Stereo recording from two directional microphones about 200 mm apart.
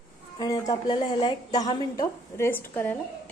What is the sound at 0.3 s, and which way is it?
A woman's voice, 15° left (ahead or behind).